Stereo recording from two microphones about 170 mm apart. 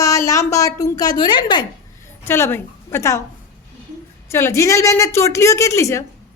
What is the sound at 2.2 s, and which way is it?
Speech, 15° left (ahead or behind).